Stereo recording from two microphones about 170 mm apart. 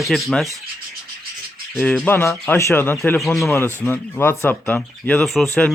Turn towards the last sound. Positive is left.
turn(degrees=5)  # may be behind; listen again after turning